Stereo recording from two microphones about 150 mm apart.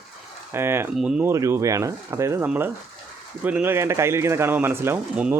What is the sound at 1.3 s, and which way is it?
Speech, 20° right (ahead or behind).